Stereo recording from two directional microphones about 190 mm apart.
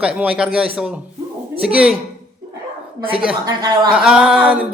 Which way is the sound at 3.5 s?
20° right (ahead or behind).